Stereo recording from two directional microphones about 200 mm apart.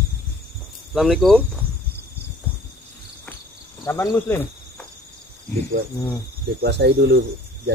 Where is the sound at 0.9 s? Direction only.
Centre (ahead or behind).